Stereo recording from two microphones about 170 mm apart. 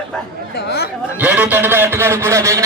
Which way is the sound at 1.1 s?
10° right (ahead or behind).